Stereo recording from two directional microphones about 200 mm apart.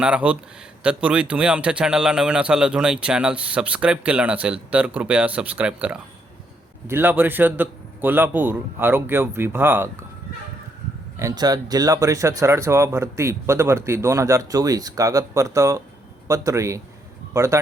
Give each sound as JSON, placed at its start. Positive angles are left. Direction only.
{"t": 0.0, "sound": "speech", "side_deg": -5}
{"t": 11.2, "sound": "speech", "side_deg": -20}